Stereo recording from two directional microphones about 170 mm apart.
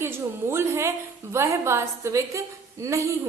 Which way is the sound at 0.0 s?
15° right (ahead or behind).